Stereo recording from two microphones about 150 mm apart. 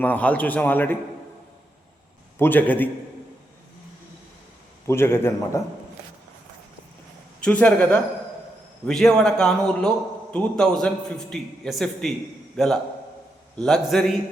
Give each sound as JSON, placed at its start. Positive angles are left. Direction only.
{"t": 0.0, "sound": "a man's voice", "side_deg": 10}
{"t": 2.4, "sound": "a man's voice", "side_deg": 10}
{"t": 4.9, "sound": "a man's voice", "side_deg": 15}
{"t": 7.4, "sound": "a man's voice", "side_deg": 10}